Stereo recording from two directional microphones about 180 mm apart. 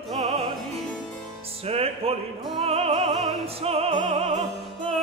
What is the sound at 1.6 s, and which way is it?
Opera, 35° right (ahead or behind).